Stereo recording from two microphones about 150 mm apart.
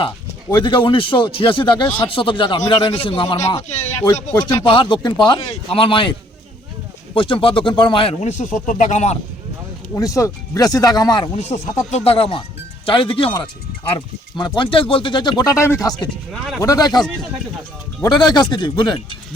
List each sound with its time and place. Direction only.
0.5 s speech: 35° left (ahead or behind)
3.3 s speech: 20° left (ahead or behind)
4.5 s speech: 35° left (ahead or behind)
8.2 s speech: 50° left (ahead or behind)
9.9 s speech: 20° left (ahead or behind)
11.3 s speech: 45° left (ahead or behind); by 17.0 s 25° left (ahead or behind)
18.0 s speech: 30° left (ahead or behind)